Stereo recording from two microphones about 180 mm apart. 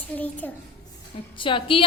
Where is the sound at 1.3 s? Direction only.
30° left (ahead or behind).